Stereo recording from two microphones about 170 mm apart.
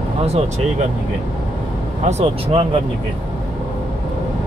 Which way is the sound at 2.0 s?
35° right (ahead or behind).